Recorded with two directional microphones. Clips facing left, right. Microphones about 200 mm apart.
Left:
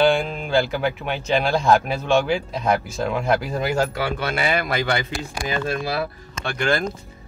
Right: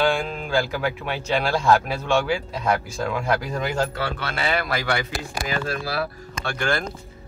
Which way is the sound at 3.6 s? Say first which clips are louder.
Left 3 dB; 10° left (ahead or behind).